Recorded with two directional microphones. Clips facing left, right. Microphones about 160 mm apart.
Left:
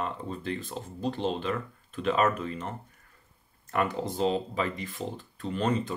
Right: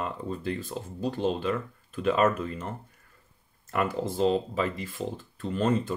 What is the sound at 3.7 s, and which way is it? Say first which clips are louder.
Speech: right 1 dB; 5° right (ahead or behind).